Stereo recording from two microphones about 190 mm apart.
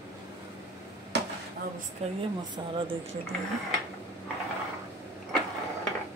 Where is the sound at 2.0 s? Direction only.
35° right (ahead or behind).